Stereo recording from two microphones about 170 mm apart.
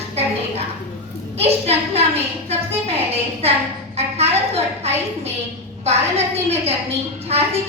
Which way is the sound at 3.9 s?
40° right (ahead or behind).